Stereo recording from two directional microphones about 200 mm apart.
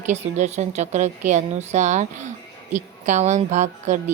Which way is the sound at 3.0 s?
35° right (ahead or behind).